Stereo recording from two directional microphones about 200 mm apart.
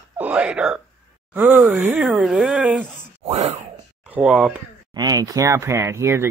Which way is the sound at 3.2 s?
35° right (ahead or behind).